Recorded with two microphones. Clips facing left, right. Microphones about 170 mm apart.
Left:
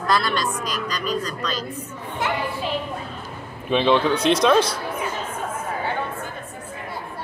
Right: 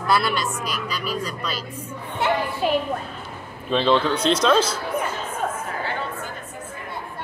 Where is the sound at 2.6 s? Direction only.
50° right (ahead or behind).